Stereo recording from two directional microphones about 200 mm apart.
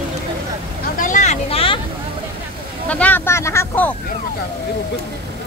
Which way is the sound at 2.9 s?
5° left (ahead or behind).